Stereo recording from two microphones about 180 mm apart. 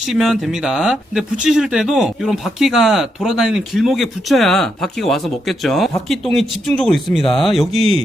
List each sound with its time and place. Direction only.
0.0 s speech: centre (ahead or behind)
7.8 s speech: 30° right (ahead or behind)